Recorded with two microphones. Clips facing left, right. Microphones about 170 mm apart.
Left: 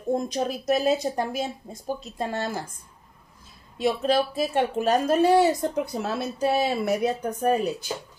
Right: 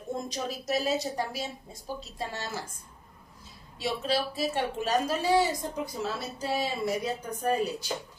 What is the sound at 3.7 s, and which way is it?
A woman's voice, 50° left (ahead or behind).